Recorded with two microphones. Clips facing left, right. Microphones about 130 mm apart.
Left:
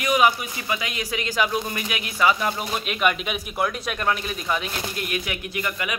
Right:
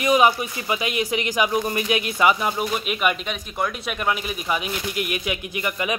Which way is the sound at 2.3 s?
5° right (ahead or behind).